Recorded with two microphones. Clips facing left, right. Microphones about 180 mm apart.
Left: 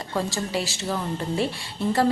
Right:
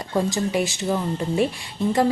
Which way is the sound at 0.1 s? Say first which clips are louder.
Right 5 dB; 15° right (ahead or behind).